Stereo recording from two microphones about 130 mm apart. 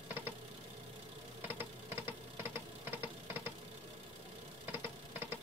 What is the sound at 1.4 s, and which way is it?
Engine, 20° right (ahead or behind).